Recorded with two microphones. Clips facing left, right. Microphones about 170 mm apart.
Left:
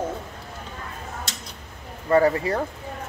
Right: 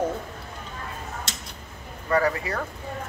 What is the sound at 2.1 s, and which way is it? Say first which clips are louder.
Speech: left 5 dB; 30° left (ahead or behind).